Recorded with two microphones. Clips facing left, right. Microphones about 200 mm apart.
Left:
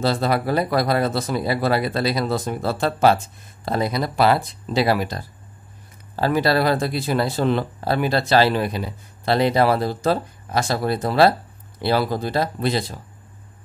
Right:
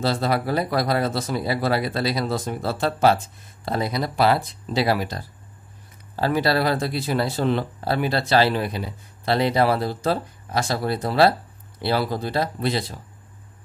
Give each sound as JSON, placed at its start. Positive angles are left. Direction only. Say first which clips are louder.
{"t": 0.0, "sound": "speech", "louder": "left 2 dB", "side_deg": 55}